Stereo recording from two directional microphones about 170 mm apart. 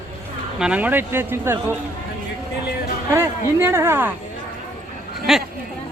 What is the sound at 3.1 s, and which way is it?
Speech, 15° right (ahead or behind).